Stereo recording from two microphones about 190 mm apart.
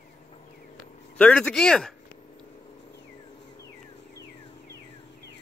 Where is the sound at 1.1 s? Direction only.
5° left (ahead or behind).